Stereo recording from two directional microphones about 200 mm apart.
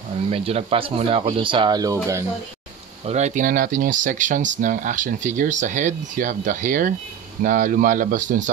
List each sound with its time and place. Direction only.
0.3 s speech: 30° right (ahead or behind)
3.1 s speech: 35° right (ahead or behind)